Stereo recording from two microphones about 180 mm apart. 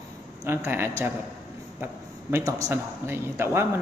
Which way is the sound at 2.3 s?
15° right (ahead or behind).